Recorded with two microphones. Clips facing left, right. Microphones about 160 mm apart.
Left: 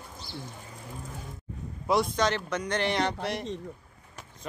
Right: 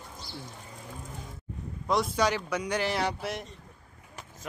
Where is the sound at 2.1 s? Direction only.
10° right (ahead or behind).